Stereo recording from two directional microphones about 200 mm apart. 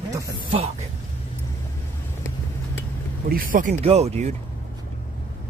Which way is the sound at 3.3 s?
45° right (ahead or behind).